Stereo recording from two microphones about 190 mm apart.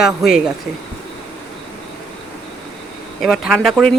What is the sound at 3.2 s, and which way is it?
Speech, centre (ahead or behind).